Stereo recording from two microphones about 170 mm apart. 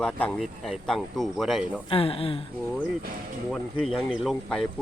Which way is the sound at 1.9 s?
35° left (ahead or behind).